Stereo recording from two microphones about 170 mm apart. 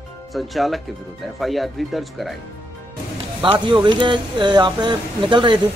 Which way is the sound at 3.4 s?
30° right (ahead or behind).